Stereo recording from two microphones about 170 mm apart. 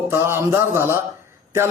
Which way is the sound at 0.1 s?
15° right (ahead or behind).